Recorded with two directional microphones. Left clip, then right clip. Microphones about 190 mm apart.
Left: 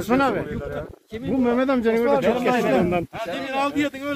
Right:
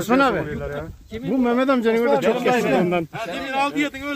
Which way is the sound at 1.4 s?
55° right (ahead or behind).